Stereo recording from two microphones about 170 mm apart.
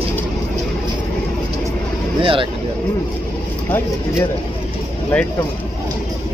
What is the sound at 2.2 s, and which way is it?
Speech, 30° right (ahead or behind).